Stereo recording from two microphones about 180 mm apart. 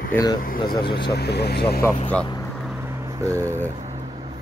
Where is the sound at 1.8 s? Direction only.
15° left (ahead or behind).